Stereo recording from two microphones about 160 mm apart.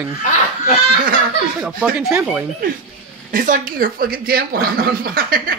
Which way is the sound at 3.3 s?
60° right (ahead or behind).